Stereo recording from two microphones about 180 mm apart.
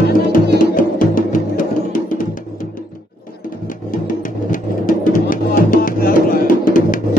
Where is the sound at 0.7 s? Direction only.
50° left (ahead or behind).